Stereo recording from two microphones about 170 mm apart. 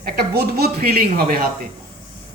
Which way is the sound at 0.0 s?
65° right (ahead or behind).